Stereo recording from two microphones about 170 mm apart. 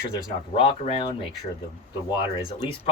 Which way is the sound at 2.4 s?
30° left (ahead or behind).